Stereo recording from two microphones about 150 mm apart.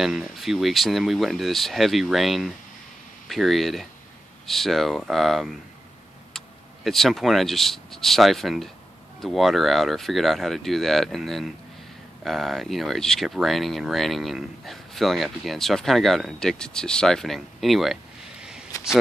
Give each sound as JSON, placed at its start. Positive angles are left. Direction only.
{"t": 0.0, "sound": "speech", "side_deg": -5}